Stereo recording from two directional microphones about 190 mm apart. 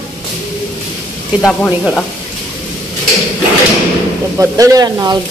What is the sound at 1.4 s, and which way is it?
Speech, 5° left (ahead or behind).